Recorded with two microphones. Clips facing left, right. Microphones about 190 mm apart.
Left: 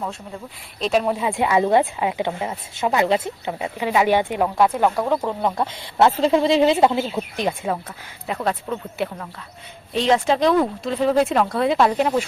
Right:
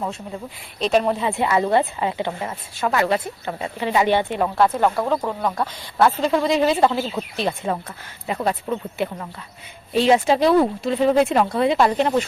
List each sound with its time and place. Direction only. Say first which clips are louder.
0.8 s a woman's voice: right 1 dB; centre (ahead or behind)
5.4 s a woman's voice: left 1 dB; 25° left (ahead or behind)
8.4 s speech: right 1 dB; 15° right (ahead or behind); by 12.2 s 5° left (ahead or behind)